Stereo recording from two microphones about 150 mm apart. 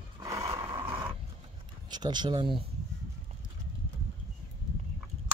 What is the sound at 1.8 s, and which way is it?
Speech, 30° right (ahead or behind).